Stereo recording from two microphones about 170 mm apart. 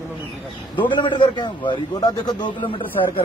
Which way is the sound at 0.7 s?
30° left (ahead or behind).